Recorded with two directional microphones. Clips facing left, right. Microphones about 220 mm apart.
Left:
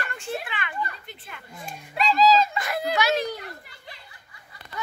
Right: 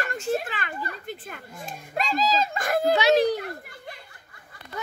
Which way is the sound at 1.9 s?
45° right (ahead or behind).